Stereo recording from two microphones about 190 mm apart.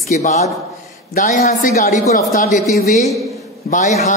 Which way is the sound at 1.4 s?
40° left (ahead or behind).